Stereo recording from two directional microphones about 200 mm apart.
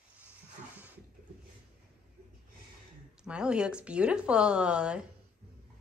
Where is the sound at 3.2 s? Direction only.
5° right (ahead or behind).